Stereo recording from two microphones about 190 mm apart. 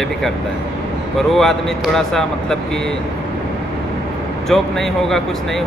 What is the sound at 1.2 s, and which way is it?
Speech, centre (ahead or behind).